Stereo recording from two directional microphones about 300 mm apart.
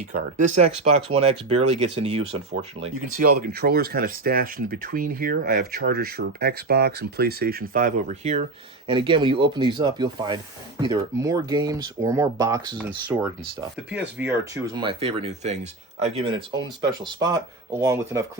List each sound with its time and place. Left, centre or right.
0.1 s speech: right; by 18.3 s centre